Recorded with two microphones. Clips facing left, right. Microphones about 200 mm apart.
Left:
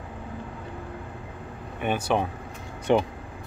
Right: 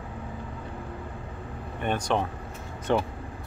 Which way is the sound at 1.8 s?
5° left (ahead or behind).